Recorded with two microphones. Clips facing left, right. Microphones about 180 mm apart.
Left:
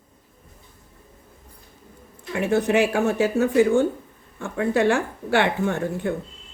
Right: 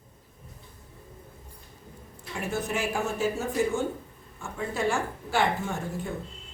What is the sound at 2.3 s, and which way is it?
Speech, 65° left (ahead or behind).